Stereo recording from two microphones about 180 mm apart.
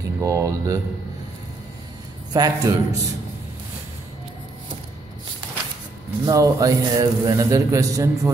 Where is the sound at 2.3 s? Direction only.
20° right (ahead or behind).